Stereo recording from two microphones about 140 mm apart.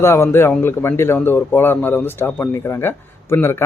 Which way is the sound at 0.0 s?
20° left (ahead or behind).